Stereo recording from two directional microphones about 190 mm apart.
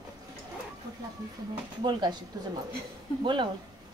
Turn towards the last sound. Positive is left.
turn(degrees=-25)  # may be behind; listen again after turning